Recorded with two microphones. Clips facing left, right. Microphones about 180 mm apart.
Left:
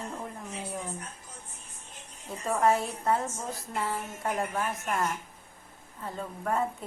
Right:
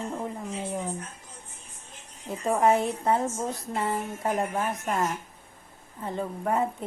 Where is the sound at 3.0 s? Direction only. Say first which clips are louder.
Right 3 dB; 20° right (ahead or behind).